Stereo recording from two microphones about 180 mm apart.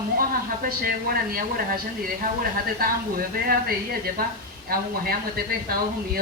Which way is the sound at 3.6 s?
55° right (ahead or behind).